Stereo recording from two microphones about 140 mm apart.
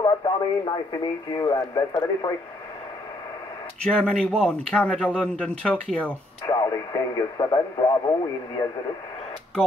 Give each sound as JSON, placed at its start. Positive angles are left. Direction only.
{"t": 0.0, "sound": "speech", "side_deg": 30}
{"t": 3.8, "sound": "speech", "side_deg": 10}
{"t": 6.4, "sound": "speech", "side_deg": 25}